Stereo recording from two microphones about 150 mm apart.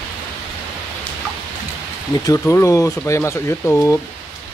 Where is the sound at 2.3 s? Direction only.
20° left (ahead or behind).